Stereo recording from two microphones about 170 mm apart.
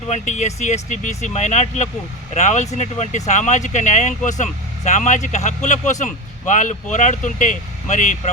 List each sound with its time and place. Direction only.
0.1 s speech: 45° left (ahead or behind)